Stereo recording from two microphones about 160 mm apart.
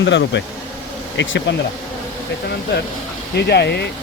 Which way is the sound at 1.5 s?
90° left.